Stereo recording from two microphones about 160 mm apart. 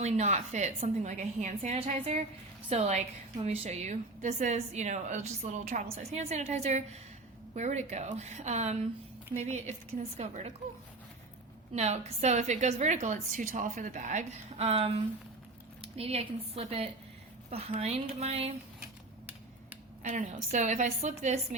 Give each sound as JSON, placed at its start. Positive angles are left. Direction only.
{"t": 0.0, "sound": "a woman's voice", "side_deg": -45}
{"t": 11.7, "sound": "a woman's voice", "side_deg": -45}
{"t": 20.0, "sound": "a woman's voice", "side_deg": -50}